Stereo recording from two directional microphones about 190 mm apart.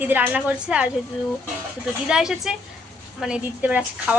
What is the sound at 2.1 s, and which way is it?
A woman's voice, 5° right (ahead or behind).